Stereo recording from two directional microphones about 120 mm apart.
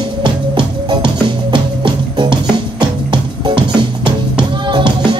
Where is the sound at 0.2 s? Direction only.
40° right (ahead or behind).